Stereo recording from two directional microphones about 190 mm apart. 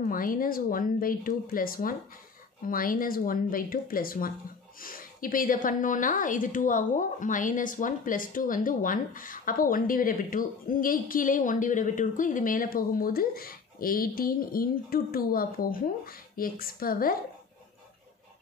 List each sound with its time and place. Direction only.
0.0 s a woman's voice: 45° left (ahead or behind)